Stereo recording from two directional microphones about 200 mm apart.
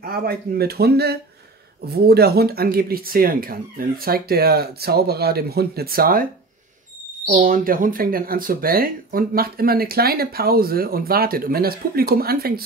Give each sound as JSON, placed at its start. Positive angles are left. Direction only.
{"t": 0.0, "sound": "speech", "side_deg": -50}
{"t": 7.3, "sound": "speech", "side_deg": -45}